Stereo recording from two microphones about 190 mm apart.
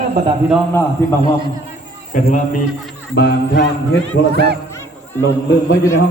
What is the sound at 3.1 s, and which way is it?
Speech, 60° left (ahead or behind).